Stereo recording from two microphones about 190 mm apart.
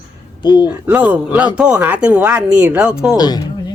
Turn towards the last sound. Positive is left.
turn(degrees=20)  # may be behind; listen again after turning